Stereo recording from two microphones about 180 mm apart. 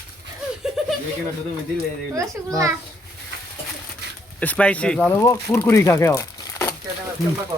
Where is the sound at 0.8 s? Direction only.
Centre (ahead or behind).